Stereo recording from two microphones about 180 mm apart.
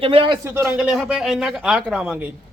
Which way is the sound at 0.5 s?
15° right (ahead or behind).